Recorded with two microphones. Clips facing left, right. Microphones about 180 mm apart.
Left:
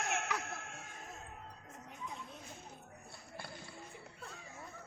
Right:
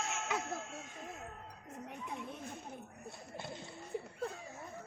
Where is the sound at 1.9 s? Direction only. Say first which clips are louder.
Right 4 dB; 60° right (ahead or behind).